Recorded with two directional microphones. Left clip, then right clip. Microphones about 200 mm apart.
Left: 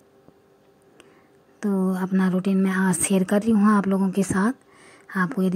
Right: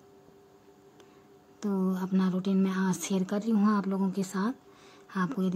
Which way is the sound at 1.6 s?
20° left (ahead or behind).